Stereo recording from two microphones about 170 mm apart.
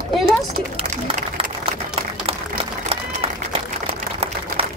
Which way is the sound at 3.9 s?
35° right (ahead or behind).